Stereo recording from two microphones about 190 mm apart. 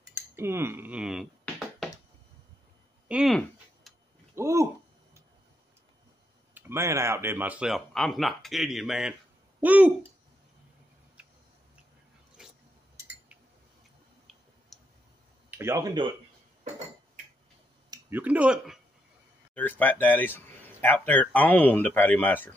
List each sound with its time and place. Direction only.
0.1 s speech: 10° right (ahead or behind)
3.1 s a sound: centre (ahead or behind)
4.4 s a sound: 15° right (ahead or behind)
6.5 s speech: 15° right (ahead or behind)
12.4 s a sound: 5° right (ahead or behind)
14.7 s clicking: centre (ahead or behind)
15.5 s speech: 15° right (ahead or behind)
18.1 s speech: 10° right (ahead or behind)
19.5 s speech: 10° left (ahead or behind)